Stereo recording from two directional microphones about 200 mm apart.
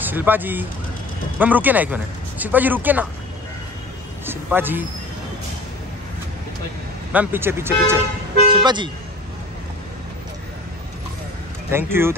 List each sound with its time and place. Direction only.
0.0 s speech: 10° right (ahead or behind)
4.3 s speech: 10° right (ahead or behind)
7.1 s speech: 10° right (ahead or behind)
11.7 s speech: 10° right (ahead or behind)